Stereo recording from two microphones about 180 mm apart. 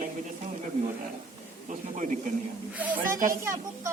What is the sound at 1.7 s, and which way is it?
Speech, 45° right (ahead or behind).